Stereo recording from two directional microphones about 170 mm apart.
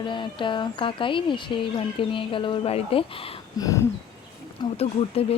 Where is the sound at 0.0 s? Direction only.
30° left (ahead or behind).